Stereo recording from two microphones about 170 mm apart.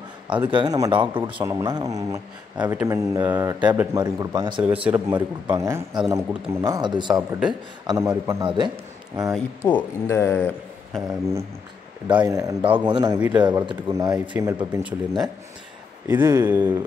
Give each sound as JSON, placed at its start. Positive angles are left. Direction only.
{"t": 0.5, "sound": "a man's voice", "side_deg": -25}
{"t": 3.6, "sound": "speech", "side_deg": -10}
{"t": 3.9, "sound": "a man's voice", "side_deg": -20}
{"t": 4.6, "sound": "speech", "side_deg": -10}
{"t": 5.1, "sound": "a man's voice", "side_deg": -20}
{"t": 7.2, "sound": "speech", "side_deg": -5}
{"t": 7.8, "sound": "a man's voice", "side_deg": -25}
{"t": 9.6, "sound": "speech", "side_deg": 15}
{"t": 10.9, "sound": "a sound", "side_deg": 0}
{"t": 12.1, "sound": "a man's voice", "side_deg": -25}
{"t": 16.1, "sound": "speech", "side_deg": -15}